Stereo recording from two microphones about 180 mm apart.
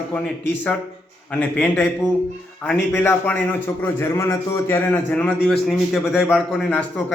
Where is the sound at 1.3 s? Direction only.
10° left (ahead or behind).